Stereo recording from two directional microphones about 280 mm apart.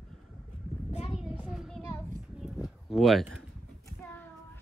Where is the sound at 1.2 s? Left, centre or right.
Centre.